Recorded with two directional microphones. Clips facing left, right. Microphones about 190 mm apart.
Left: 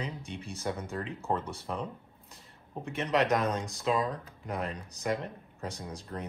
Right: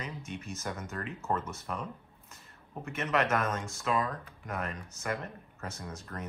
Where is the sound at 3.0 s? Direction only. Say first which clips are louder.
Left 2 dB; 15° left (ahead or behind).